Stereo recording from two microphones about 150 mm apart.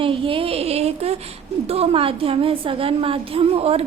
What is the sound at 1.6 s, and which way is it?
A woman's voice, 40° right (ahead or behind).